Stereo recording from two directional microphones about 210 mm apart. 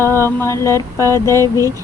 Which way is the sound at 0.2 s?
10° left (ahead or behind).